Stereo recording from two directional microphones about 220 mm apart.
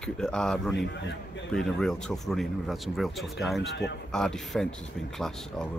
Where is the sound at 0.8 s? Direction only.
50° left (ahead or behind).